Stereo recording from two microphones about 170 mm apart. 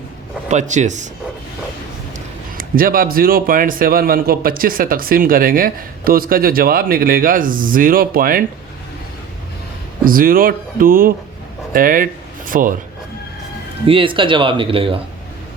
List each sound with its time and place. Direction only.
0.4 s speech: 45° right (ahead or behind)
2.6 s speech: 55° right (ahead or behind)
10.1 s speech: 55° right (ahead or behind)
13.8 s speech: 30° right (ahead or behind)